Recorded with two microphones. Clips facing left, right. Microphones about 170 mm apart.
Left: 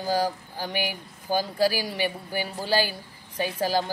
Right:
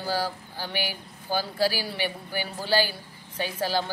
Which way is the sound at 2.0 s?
40° left (ahead or behind).